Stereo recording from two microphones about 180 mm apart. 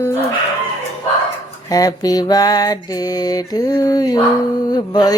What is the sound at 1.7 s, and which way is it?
Mantra, 20° left (ahead or behind).